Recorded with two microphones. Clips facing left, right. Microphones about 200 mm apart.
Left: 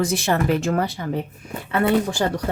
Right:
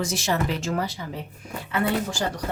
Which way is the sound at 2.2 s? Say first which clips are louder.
Left 6 dB; 60° left (ahead or behind).